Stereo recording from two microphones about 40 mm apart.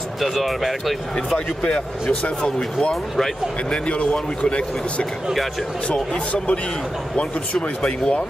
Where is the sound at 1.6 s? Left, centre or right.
Left.